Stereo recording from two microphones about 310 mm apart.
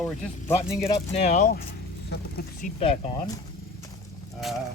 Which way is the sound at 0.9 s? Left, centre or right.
Centre.